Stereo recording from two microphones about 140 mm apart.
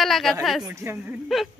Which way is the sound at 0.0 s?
Centre (ahead or behind).